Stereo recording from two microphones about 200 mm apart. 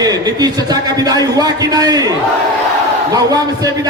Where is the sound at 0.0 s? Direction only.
20° right (ahead or behind).